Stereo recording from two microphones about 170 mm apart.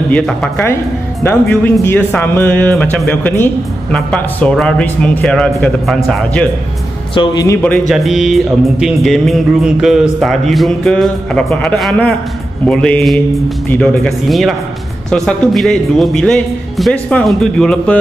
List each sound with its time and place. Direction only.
0.1 s a man's voice: 5° left (ahead or behind)
7.2 s speech: 20° left (ahead or behind)
7.9 s a man's voice: centre (ahead or behind)